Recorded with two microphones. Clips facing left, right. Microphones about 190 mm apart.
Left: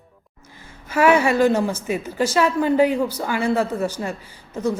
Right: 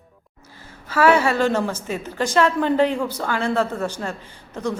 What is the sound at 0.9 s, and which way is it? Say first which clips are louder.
A woman's voice: left 1 dB; 15° left (ahead or behind).